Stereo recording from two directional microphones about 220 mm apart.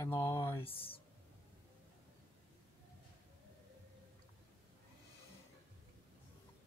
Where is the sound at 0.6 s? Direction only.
25° left (ahead or behind).